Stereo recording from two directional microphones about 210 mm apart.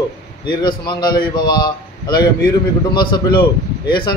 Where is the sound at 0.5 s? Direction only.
20° left (ahead or behind).